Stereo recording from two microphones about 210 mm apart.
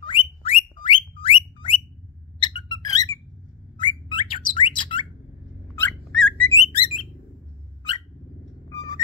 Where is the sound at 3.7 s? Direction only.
20° left (ahead or behind).